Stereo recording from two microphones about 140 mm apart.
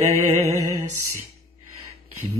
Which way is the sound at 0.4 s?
20° right (ahead or behind).